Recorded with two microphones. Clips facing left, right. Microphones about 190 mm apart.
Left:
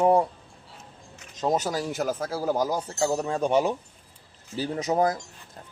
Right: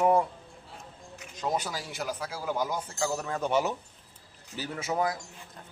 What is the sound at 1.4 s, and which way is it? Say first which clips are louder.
Speech: left 6 dB; 45° left (ahead or behind).